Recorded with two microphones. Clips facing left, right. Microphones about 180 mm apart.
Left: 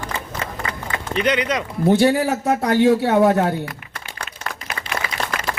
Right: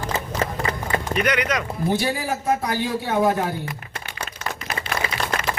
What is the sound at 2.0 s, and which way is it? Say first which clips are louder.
A man's voice: left 8 dB; 80° left.